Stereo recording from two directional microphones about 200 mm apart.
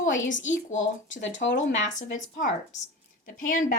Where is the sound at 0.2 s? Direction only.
70° left (ahead or behind).